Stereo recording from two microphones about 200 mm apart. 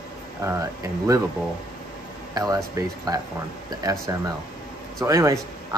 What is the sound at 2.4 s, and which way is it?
Speech, 15° right (ahead or behind).